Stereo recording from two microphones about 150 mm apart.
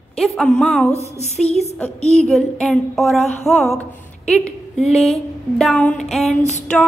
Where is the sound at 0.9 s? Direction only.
45° left (ahead or behind).